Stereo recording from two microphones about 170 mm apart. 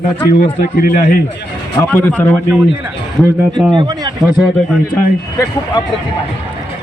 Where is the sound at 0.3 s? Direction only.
60° left (ahead or behind).